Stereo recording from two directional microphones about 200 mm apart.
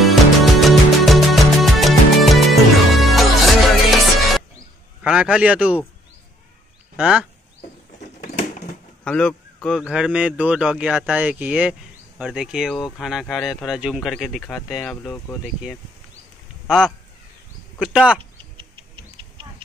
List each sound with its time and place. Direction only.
0.0 s music: centre (ahead or behind)
5.0 s a man's voice: 5° right (ahead or behind)
7.0 s speech: 5° right (ahead or behind)
9.0 s speech: 5° left (ahead or behind)
18.6 s bird: 25° right (ahead or behind)